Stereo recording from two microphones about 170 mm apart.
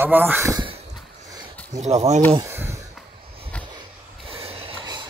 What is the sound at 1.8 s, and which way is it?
Speech, 40° right (ahead or behind).